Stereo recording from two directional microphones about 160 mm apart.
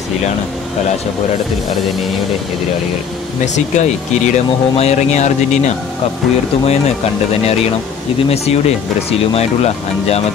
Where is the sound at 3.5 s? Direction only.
45° left (ahead or behind).